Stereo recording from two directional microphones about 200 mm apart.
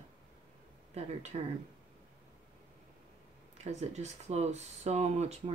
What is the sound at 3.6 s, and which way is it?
Speech, 35° right (ahead or behind).